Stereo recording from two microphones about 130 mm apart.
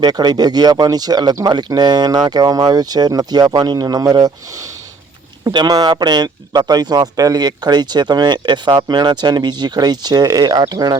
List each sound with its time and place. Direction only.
0.0 s speech: 35° right (ahead or behind)